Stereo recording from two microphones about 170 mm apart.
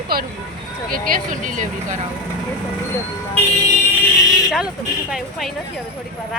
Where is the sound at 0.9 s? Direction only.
50° right (ahead or behind).